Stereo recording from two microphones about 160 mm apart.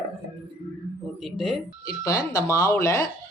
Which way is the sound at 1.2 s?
Centre (ahead or behind).